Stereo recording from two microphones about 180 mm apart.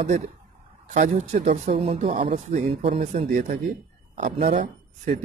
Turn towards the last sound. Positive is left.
turn(degrees=-40)  # may be behind; listen again after turning